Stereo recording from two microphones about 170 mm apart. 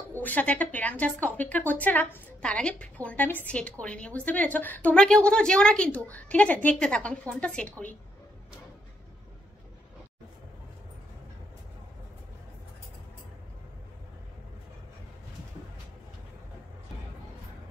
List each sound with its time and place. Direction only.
0.1 s a woman's voice: 10° left (ahead or behind)